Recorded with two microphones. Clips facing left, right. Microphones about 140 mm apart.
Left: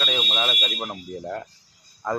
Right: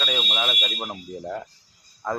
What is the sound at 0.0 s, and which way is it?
Fire alarm, centre (ahead or behind).